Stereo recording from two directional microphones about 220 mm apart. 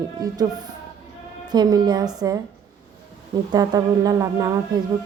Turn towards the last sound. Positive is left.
turn(degrees=-15)  # may be behind; listen again after turning